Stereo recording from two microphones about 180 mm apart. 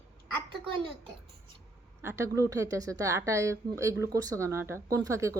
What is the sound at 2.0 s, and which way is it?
Speech, 15° right (ahead or behind).